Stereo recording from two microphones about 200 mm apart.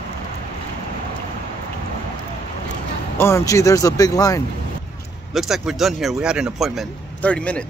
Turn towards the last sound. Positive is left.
turn(degrees=5)  # may be behind; listen again after turning